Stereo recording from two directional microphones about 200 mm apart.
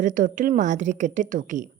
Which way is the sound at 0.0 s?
40° right (ahead or behind).